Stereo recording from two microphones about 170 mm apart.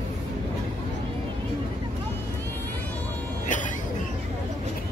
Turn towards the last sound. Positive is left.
turn(degrees=50)  # may be behind; listen again after turning